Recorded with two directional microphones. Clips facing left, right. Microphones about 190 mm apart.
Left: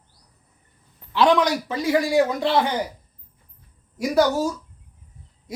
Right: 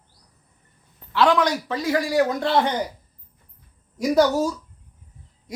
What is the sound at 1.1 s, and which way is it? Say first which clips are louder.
Speech: left 1 dB; 15° left (ahead or behind).